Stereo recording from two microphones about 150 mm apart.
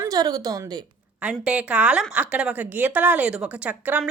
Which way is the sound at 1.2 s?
10° right (ahead or behind).